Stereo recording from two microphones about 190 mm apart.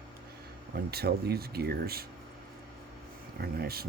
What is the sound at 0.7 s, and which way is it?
Speech, 55° right (ahead or behind).